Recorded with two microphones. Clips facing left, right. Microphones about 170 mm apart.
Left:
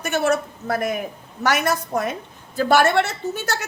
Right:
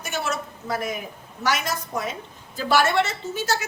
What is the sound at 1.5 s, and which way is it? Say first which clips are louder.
A woman's voice: left 5 dB; 60° left (ahead or behind).